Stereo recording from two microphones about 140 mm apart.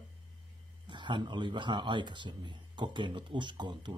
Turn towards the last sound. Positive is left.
turn(degrees=-35)  # may be behind; listen again after turning